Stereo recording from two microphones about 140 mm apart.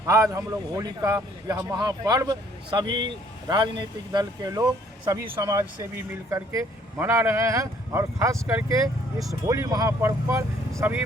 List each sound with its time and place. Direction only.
0.0 s speech: 25° right (ahead or behind)